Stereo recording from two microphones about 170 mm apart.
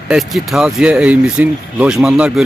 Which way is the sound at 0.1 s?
Centre (ahead or behind).